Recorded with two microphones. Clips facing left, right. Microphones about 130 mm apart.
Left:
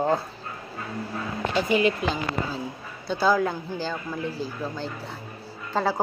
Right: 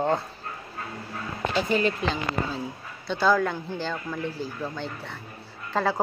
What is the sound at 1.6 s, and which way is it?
Speech, 10° left (ahead or behind).